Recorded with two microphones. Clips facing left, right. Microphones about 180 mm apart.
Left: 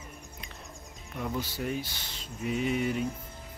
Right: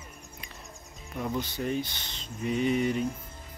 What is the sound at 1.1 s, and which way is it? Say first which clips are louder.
Speech: right 2 dB; centre (ahead or behind).